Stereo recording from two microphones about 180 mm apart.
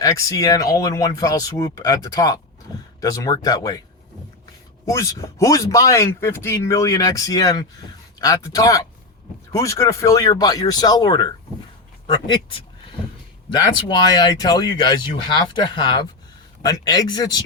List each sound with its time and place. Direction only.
0.0 s speech: 20° left (ahead or behind)
4.9 s speech: 15° left (ahead or behind)
13.8 s speech: 25° left (ahead or behind)